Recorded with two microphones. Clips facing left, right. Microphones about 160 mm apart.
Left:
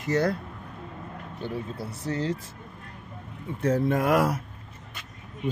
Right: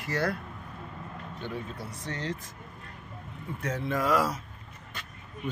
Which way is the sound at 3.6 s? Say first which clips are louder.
Left 10 dB; 35° left (ahead or behind).